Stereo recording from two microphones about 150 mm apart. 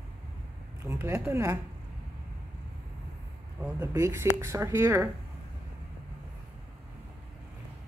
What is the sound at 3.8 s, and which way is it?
Speech, 20° right (ahead or behind).